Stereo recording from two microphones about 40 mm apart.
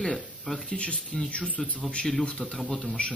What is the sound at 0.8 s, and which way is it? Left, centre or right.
Speech, left.